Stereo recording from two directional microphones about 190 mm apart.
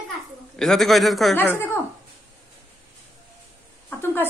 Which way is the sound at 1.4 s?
10° left (ahead or behind).